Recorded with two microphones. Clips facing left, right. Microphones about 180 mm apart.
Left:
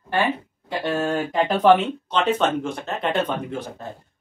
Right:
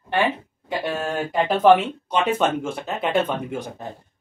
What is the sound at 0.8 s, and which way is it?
Speech, 5° right (ahead or behind).